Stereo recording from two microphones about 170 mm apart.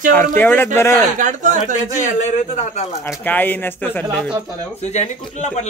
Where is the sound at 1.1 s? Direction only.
50° right (ahead or behind).